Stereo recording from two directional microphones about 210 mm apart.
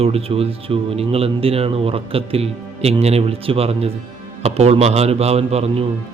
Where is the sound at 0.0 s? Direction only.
30° right (ahead or behind).